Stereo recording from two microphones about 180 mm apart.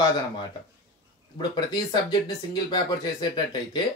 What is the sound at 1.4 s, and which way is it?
Speech, 25° left (ahead or behind).